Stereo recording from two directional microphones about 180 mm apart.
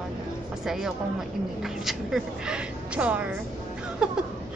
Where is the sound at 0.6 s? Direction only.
5° right (ahead or behind).